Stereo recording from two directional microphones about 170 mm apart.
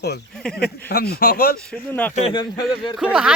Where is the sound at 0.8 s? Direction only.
70° left (ahead or behind).